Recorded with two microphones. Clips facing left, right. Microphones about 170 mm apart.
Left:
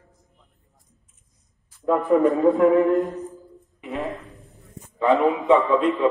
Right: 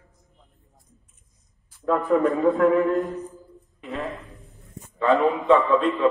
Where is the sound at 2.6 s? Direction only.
20° left (ahead or behind).